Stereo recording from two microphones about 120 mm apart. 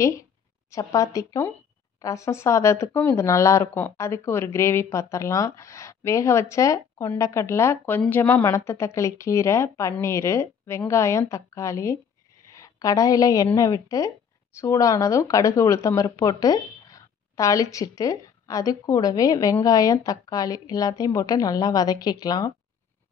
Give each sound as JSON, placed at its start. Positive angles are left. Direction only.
{"t": 0.7, "sound": "a woman's voice", "side_deg": 25}